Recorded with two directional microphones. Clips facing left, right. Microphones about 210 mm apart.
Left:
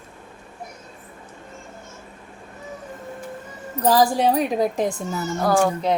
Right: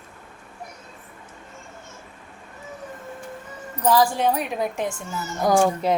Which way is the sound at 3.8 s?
35° left (ahead or behind).